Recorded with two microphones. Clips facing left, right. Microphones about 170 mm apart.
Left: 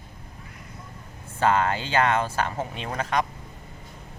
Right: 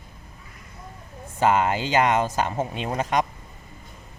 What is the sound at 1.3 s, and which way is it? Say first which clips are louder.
Speech: right 2 dB; 15° right (ahead or behind).